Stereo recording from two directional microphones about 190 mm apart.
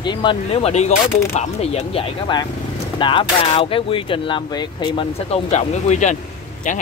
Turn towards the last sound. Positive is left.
turn(degrees=40)  # may be behind; listen again after turning